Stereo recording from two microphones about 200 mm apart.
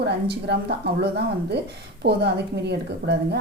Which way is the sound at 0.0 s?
55° right (ahead or behind).